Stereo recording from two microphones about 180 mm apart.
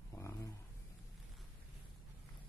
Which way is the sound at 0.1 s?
15° left (ahead or behind).